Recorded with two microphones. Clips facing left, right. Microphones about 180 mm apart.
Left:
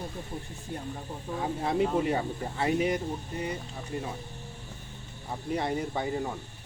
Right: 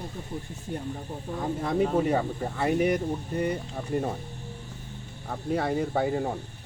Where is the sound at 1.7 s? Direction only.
40° right (ahead or behind).